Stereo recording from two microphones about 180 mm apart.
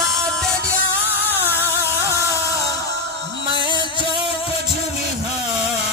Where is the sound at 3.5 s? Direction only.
25° right (ahead or behind).